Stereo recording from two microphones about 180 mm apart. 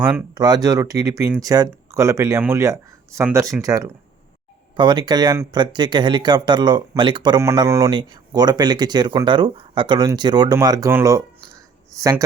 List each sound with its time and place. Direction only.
0.3 s speech: 20° right (ahead or behind)